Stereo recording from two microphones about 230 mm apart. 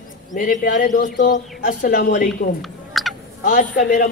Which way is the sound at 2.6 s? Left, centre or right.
Centre.